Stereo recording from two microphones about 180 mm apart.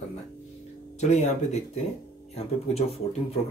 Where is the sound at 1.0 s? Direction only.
40° left (ahead or behind).